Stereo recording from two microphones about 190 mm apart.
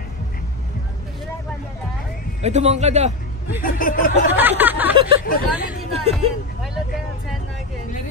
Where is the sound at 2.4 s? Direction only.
35° right (ahead or behind).